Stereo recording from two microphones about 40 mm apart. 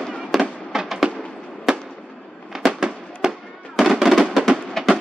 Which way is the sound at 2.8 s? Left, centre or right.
Centre.